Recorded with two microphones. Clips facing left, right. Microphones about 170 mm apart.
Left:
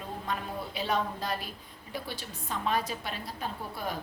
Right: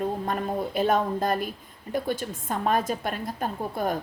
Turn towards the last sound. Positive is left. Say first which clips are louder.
# right 8 dB
turn(degrees=-50)  # may be behind; listen again after turning